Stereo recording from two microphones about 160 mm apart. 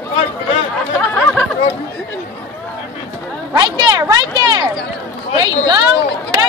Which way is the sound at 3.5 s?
25° right (ahead or behind).